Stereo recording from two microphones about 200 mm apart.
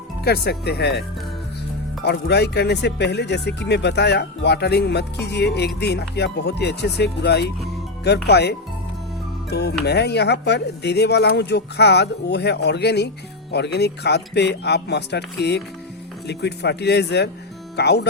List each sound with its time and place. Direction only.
0.3 s speech: 55° left (ahead or behind)
2.0 s speech: 55° left (ahead or behind)